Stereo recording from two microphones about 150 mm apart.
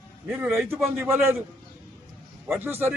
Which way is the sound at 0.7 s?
15° right (ahead or behind).